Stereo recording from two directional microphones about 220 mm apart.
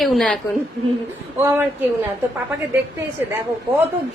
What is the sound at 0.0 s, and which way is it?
Speech, centre (ahead or behind).